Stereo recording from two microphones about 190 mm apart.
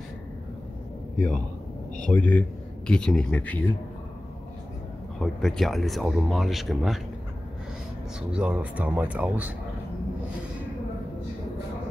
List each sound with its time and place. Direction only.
2.0 s speech: 5° left (ahead or behind)
5.2 s speech: centre (ahead or behind)
8.3 s speech: 5° right (ahead or behind)